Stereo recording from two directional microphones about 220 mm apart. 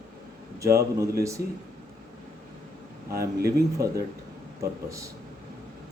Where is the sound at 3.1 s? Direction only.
45° right (ahead or behind).